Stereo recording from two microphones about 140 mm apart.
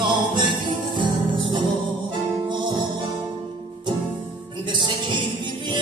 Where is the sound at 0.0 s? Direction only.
35° right (ahead or behind).